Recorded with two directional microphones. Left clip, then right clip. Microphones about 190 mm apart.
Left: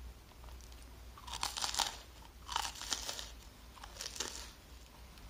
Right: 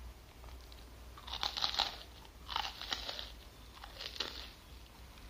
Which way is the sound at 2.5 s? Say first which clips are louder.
Even; 15° left (ahead or behind).